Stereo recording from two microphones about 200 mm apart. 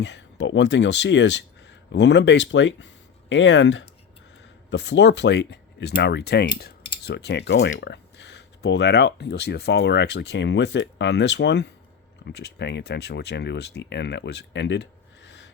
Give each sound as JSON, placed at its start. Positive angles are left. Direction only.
{"t": 0.0, "sound": "speech", "side_deg": 65}